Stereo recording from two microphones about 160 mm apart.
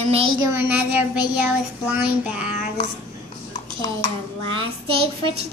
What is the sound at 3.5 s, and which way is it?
Dishes, 25° left (ahead or behind).